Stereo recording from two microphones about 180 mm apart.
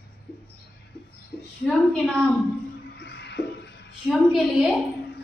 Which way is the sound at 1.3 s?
55° left (ahead or behind).